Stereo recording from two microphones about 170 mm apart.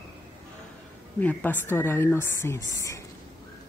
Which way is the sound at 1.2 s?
10° left (ahead or behind).